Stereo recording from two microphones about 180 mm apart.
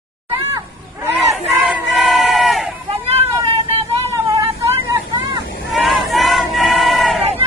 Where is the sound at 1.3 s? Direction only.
Centre (ahead or behind).